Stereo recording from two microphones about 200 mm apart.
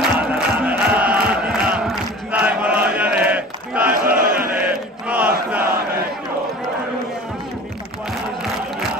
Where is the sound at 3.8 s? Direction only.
45° right (ahead or behind).